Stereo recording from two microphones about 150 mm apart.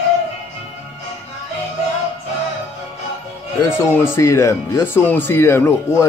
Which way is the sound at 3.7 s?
15° left (ahead or behind).